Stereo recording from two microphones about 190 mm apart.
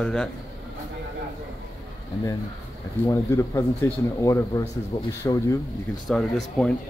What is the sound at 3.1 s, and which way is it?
Speech, 15° left (ahead or behind).